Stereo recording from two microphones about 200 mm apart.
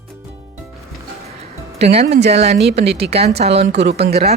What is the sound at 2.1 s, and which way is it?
Speech, 60° right (ahead or behind).